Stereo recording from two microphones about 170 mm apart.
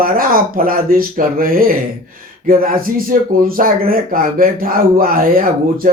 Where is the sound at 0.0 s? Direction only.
55° right (ahead or behind).